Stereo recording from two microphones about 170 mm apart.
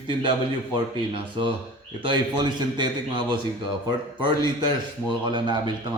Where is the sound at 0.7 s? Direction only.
30° right (ahead or behind).